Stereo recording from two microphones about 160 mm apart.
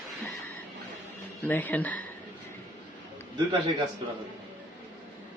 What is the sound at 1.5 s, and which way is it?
Speech, 10° left (ahead or behind).